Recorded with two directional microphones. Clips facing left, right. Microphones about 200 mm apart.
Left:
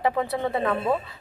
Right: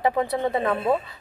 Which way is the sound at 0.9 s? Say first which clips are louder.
Right 4 dB; 20° right (ahead or behind).